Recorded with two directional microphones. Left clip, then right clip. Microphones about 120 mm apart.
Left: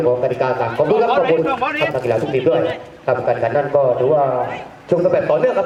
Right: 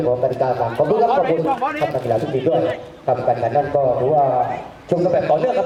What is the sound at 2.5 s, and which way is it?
Speech, 45° left (ahead or behind).